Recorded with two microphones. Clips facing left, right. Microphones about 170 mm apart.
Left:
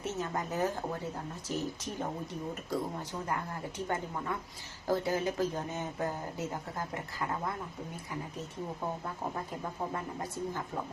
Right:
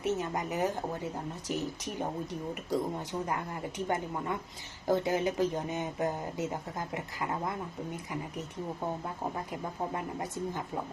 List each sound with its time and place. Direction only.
0.0 s a woman's voice: 15° right (ahead or behind)